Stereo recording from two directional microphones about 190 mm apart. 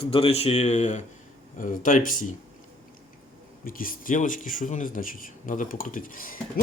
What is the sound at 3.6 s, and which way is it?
Speech, 50° left (ahead or behind).